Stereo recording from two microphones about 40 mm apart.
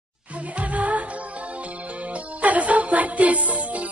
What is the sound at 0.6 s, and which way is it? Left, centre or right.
Music, right.